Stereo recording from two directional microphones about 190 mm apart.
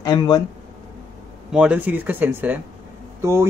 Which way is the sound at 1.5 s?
5° right (ahead or behind).